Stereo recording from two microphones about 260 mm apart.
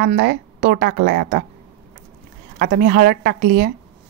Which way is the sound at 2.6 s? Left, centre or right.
Right.